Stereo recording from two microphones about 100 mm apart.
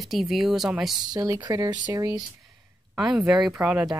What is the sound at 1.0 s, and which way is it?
Speech, 35° right (ahead or behind).